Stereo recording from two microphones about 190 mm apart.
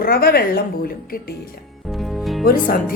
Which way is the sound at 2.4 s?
50° left (ahead or behind).